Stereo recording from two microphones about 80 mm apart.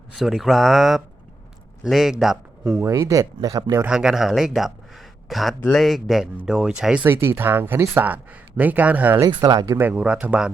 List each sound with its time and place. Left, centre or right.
0.2 s speech: centre
2.8 s speech: right
3.8 s speech: centre
7.0 s speech: right
9.2 s speech: right
9.8 s speech: centre